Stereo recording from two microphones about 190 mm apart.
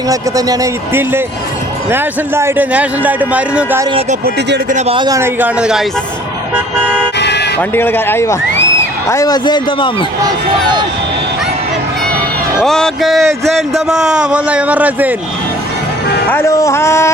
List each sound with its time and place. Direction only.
0.1 s a man's voice: 20° right (ahead or behind)
4.4 s speech: 60° right (ahead or behind)
4.7 s speech: 30° right (ahead or behind)
5.0 s a man's voice: 15° right (ahead or behind)
7.2 s music: 65° left (ahead or behind)
7.6 s a man's voice: 10° left (ahead or behind)
12.5 s speech: centre (ahead or behind)
16.3 s speech: 15° left (ahead or behind)